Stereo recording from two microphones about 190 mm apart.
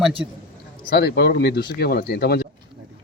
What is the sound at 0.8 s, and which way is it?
Speech, 60° left (ahead or behind).